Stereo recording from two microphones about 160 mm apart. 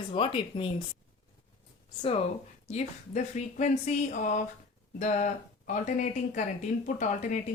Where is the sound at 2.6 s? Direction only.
45° left (ahead or behind).